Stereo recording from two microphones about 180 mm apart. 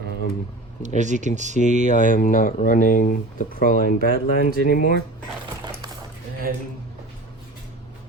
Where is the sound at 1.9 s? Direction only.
50° left (ahead or behind).